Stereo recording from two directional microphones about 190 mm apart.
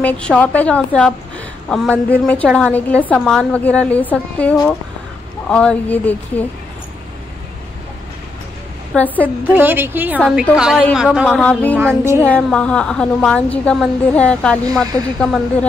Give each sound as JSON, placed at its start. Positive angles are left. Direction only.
{"t": 0.0, "sound": "a woman's voice", "side_deg": 5}
{"t": 8.9, "sound": "a woman's voice", "side_deg": 10}
{"t": 9.5, "sound": "a woman's voice", "side_deg": -10}
{"t": 11.8, "sound": "a woman's voice", "side_deg": -15}
{"t": 12.2, "sound": "a woman's voice", "side_deg": 10}
{"t": 14.7, "sound": "speech", "side_deg": -20}